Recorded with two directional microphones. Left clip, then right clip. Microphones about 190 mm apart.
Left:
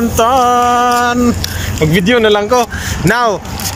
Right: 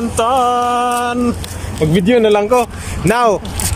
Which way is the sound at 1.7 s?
15° right (ahead or behind).